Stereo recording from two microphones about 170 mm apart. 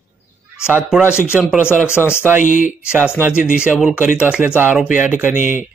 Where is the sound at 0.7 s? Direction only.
5° right (ahead or behind).